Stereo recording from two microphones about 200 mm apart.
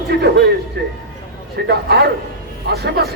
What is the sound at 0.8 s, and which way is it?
A man's voice, 60° right (ahead or behind).